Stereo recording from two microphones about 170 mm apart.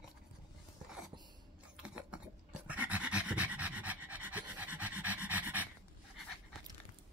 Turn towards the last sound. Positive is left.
turn(degrees=-10)  # may be behind; listen again after turning